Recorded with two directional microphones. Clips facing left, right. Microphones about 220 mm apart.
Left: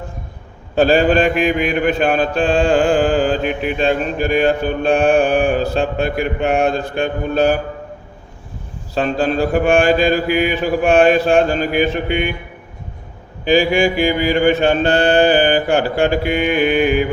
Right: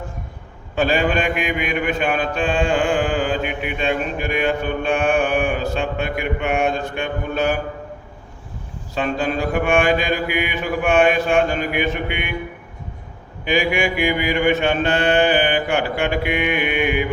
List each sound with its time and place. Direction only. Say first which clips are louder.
0.8 s mantra: left 6 dB; 35° left (ahead or behind)
9.0 s mantra: left 5 dB; 35° left (ahead or behind)
13.4 s mantra: left 6 dB; 30° left (ahead or behind)